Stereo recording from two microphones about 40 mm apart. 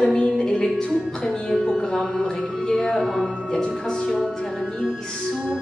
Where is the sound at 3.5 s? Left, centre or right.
Left.